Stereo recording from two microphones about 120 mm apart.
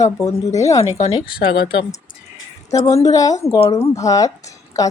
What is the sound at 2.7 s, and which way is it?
A woman's voice, 25° left (ahead or behind).